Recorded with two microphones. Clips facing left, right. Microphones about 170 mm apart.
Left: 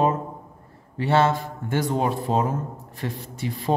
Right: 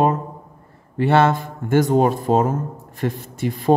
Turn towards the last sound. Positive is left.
turn(degrees=-50)  # may be behind; listen again after turning